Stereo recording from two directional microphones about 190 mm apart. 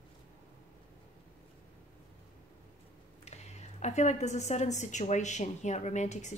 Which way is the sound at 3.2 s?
35° left (ahead or behind).